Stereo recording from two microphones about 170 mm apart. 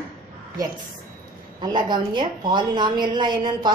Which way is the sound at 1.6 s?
25° right (ahead or behind).